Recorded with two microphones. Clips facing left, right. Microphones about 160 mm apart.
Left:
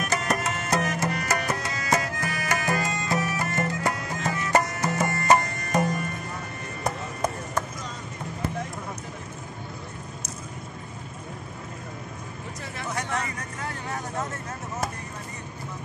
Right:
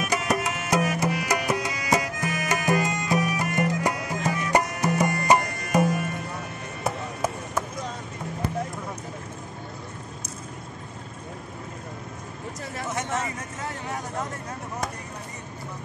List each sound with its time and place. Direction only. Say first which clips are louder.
0.0 s music: right 1 dB; 5° right (ahead or behind)
6.8 s chop: even; 5° right (ahead or behind)
12.9 s a sound: right 1 dB; 20° right (ahead or behind)